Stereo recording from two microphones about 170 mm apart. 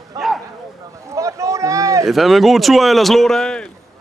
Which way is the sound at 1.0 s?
20° right (ahead or behind).